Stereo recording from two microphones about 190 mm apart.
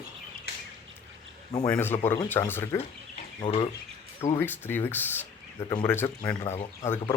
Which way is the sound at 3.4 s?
30° left (ahead or behind).